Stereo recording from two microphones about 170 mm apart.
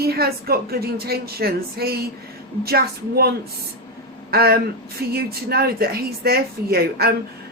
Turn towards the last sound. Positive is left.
turn(degrees=-65)  # may be behind; listen again after turning